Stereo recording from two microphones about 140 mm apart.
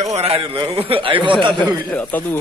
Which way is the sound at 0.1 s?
50° right (ahead or behind).